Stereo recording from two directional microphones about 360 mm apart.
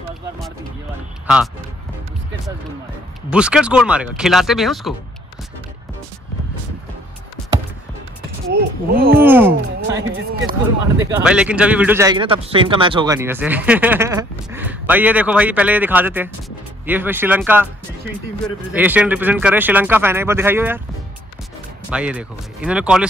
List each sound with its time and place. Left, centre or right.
1.2 s speech: centre
3.3 s speech: centre
8.5 s speech: right
9.2 s speech: centre
9.9 s speech: right
11.0 s speech: centre
21.9 s speech: centre